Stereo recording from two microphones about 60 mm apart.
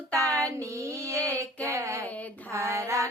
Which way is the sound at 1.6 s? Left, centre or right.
Right.